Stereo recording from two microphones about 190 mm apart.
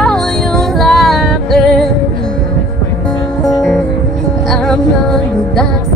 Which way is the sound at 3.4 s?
5° left (ahead or behind).